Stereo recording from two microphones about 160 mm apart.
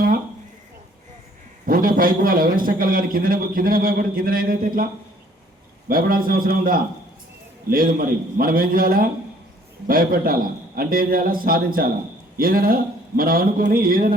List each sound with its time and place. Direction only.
1.6 s a man's voice: 60° right (ahead or behind)
5.9 s a man's voice: 65° right (ahead or behind)